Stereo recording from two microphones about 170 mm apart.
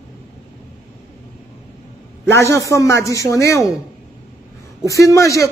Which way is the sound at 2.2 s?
15° left (ahead or behind).